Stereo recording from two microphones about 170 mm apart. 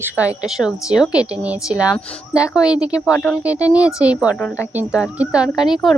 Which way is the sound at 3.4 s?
5° right (ahead or behind).